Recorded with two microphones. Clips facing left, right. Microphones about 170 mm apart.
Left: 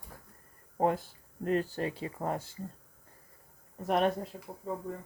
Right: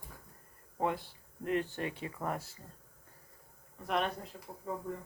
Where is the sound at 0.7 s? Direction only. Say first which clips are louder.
Left 5 dB; 45° left (ahead or behind); by 2.5 s 25° left (ahead or behind).